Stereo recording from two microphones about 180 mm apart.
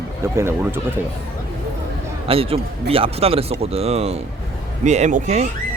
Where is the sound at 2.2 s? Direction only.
30° right (ahead or behind).